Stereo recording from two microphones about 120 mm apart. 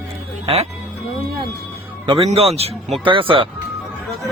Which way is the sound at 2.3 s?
55° right (ahead or behind).